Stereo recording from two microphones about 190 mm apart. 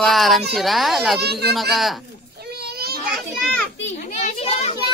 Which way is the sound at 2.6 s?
55° right (ahead or behind).